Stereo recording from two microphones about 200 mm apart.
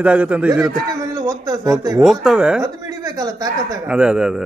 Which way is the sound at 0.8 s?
15° right (ahead or behind).